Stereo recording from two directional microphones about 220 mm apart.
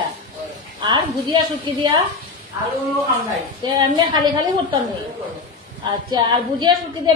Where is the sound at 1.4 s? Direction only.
20° right (ahead or behind).